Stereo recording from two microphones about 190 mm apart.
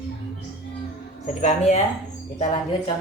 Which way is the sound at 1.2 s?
40° left (ahead or behind).